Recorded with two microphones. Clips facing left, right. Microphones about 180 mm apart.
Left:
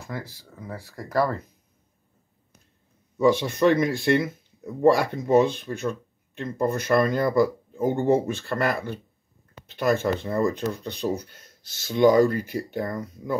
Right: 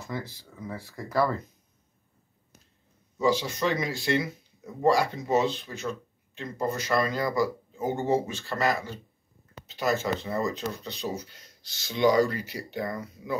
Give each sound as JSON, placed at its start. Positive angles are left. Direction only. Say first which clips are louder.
{"t": 0.0, "sound": "speech", "louder": "even", "side_deg": 10}
{"t": 3.2, "sound": "speech", "louder": "left 5 dB", "side_deg": 60}